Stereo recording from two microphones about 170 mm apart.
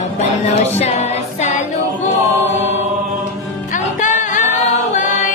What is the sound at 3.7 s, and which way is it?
Music, 50° left (ahead or behind).